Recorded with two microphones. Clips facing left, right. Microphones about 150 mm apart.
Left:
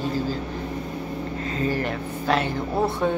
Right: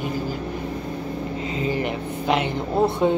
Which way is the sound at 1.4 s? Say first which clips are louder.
Even; 15° right (ahead or behind).